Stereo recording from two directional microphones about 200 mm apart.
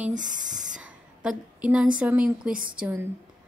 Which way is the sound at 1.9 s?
5° right (ahead or behind).